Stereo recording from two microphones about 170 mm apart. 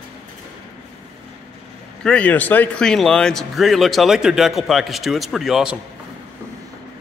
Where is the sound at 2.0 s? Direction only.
5° left (ahead or behind).